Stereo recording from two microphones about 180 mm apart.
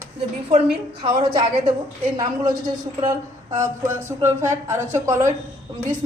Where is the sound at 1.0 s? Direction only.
25° right (ahead or behind).